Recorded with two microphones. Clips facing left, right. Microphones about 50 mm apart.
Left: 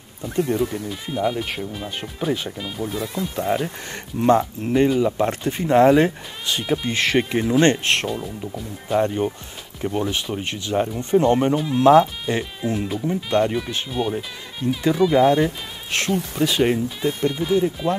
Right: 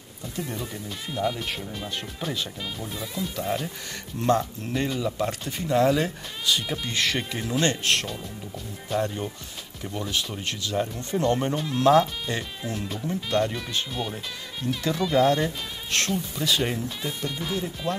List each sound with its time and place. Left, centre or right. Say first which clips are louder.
0.8 s speech: left 5 dB; centre
3.3 s speech: left 7 dB; left
6.6 s speech: left 6 dB; centre
11.5 s speech: left 6 dB; centre
11.8 s speech: left 5 dB; left
13.9 s speech: left 7 dB; centre
17.3 s speech: left 10 dB; centre